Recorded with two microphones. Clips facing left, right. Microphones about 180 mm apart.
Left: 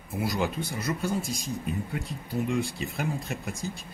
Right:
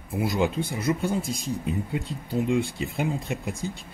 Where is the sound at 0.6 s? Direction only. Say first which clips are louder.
Right 5 dB; 55° right (ahead or behind).